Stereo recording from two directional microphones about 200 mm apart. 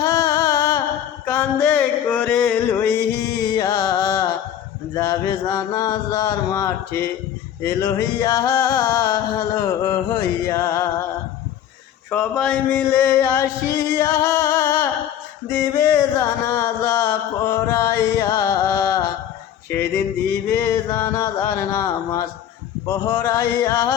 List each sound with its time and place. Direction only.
0.0 s music: 15° left (ahead or behind)
1.2 s a sound: 10° left (ahead or behind)
3.5 s music: 20° left (ahead or behind)
12.1 s music: 5° left (ahead or behind)
20.6 s a sound: 10° left (ahead or behind)
22.9 s music: 10° left (ahead or behind)